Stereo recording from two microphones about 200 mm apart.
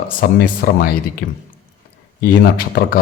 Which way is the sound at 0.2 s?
45° left (ahead or behind).